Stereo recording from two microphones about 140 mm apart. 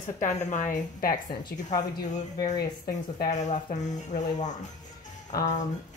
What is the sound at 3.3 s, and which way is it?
A woman's voice, 55° left (ahead or behind).